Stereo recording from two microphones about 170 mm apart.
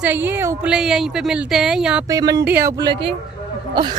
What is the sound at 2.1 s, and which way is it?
Speech, 20° right (ahead or behind).